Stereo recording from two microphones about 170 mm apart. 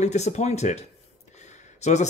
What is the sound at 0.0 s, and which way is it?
Speech, 40° left (ahead or behind).